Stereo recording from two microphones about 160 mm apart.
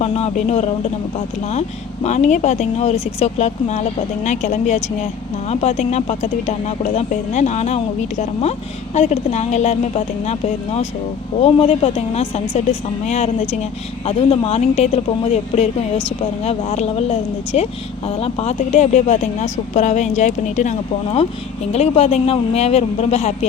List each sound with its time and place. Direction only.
0.0 s speech: 40° left (ahead or behind)
2.0 s speech: 45° left (ahead or behind)